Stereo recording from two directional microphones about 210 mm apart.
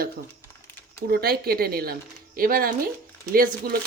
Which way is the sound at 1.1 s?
45° right (ahead or behind).